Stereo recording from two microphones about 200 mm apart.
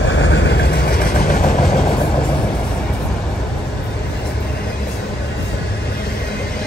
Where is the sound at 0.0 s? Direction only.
65° left (ahead or behind); by 1.5 s 45° left (ahead or behind).